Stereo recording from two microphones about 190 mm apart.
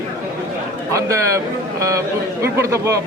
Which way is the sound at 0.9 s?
15° right (ahead or behind).